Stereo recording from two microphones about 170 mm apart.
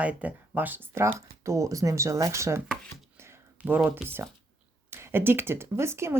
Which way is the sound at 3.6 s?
10° right (ahead or behind).